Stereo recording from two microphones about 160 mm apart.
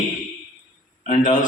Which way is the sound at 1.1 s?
50° left (ahead or behind).